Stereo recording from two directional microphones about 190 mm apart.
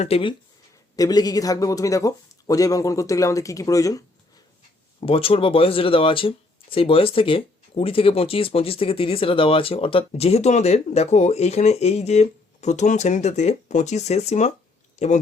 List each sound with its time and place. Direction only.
0.0 s speech: 30° left (ahead or behind)
0.9 s speech: 20° left (ahead or behind)
4.9 s speech: 30° left (ahead or behind)